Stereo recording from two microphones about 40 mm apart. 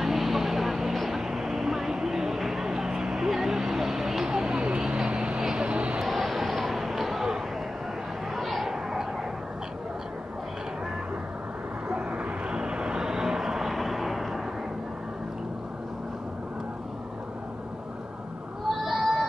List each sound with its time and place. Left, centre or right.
0.0 s vehicle: centre; by 5.9 s right
6.0 s a sound: centre
8.4 s a sound: centre
11.9 s vehicle: right
12.5 s vehicle: centre
18.9 s music: centre